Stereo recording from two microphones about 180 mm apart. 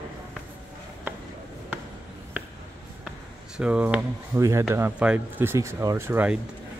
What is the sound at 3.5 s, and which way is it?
Speech, 5° right (ahead or behind).